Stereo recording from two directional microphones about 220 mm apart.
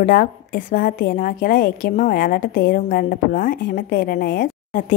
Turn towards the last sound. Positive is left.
turn(degrees=40)  # may be behind; listen again after turning